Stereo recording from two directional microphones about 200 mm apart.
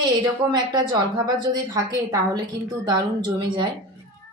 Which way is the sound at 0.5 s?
20° right (ahead or behind).